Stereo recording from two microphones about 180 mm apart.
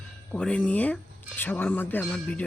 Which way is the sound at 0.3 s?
5° left (ahead or behind).